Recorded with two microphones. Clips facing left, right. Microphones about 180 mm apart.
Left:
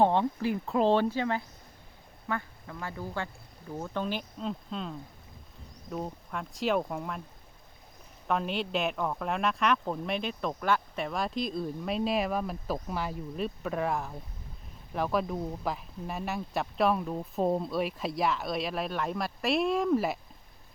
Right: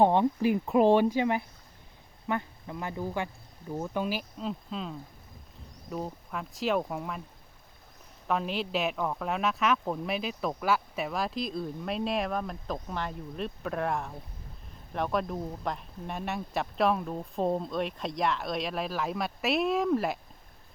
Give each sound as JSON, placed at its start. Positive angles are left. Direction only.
{"t": 0.0, "sound": "speech", "side_deg": -15}
{"t": 8.3, "sound": "speech", "side_deg": 0}